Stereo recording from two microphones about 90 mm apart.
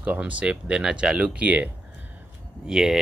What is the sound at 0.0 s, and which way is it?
Speech, 15° right (ahead or behind).